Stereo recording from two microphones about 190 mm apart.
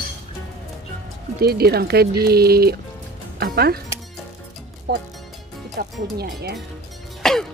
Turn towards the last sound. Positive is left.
turn(degrees=0)  # may be behind; listen again after turning